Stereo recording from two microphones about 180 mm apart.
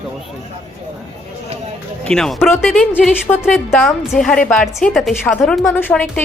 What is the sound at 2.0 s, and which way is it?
A woman's voice, 5° left (ahead or behind).